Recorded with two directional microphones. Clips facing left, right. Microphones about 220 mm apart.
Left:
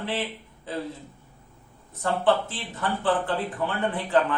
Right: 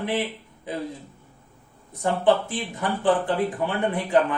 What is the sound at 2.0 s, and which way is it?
Speech, 15° right (ahead or behind).